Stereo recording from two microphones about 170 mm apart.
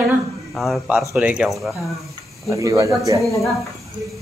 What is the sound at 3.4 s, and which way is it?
Speech, centre (ahead or behind).